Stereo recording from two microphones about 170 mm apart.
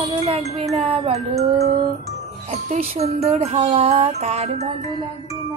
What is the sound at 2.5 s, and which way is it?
Speech, 40° right (ahead or behind).